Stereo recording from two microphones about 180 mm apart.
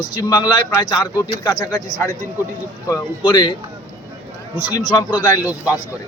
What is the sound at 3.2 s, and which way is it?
Speech, 25° left (ahead or behind).